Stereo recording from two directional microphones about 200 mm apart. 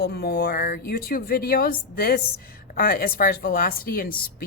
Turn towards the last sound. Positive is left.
turn(degrees=45)  # may be behind; listen again after turning